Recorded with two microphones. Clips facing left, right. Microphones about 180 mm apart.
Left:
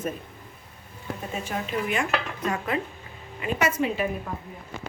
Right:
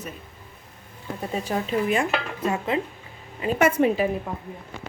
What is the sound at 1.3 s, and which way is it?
A woman's voice, 35° right (ahead or behind).